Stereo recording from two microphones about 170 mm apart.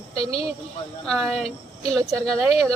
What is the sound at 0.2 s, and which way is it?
Speech, 35° left (ahead or behind).